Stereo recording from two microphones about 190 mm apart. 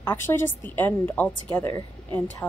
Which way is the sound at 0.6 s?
10° left (ahead or behind).